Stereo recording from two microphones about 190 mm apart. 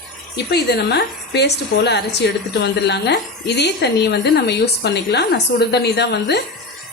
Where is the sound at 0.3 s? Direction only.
60° left (ahead or behind).